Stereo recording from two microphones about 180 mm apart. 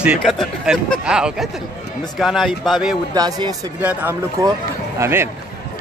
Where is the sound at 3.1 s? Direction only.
20° right (ahead or behind).